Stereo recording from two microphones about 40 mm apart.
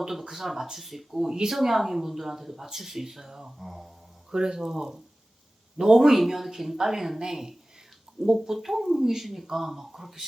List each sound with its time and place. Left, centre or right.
0.0 s speech: centre
4.3 s speech: centre
8.5 s speech: centre